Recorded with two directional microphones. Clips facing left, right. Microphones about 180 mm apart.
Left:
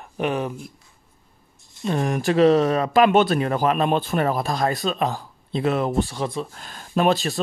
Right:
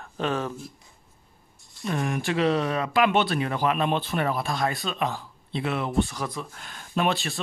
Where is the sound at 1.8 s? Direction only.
35° left (ahead or behind).